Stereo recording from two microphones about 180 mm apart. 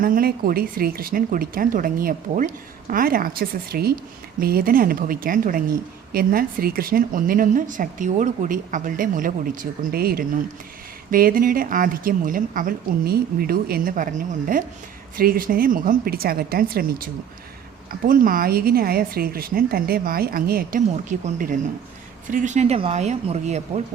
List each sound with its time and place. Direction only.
0.0 s a woman's voice: 55° right (ahead or behind); by 23.8 s 40° right (ahead or behind)